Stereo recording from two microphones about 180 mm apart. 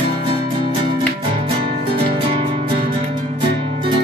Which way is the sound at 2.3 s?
30° right (ahead or behind).